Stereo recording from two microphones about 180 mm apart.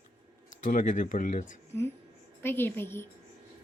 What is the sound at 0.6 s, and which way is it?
Speech, 45° left (ahead or behind).